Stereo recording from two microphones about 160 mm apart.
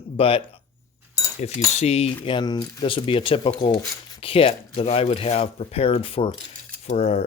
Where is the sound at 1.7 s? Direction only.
40° left (ahead or behind).